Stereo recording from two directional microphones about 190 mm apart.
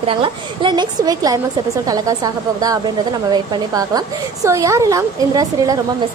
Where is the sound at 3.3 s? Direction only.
20° right (ahead or behind).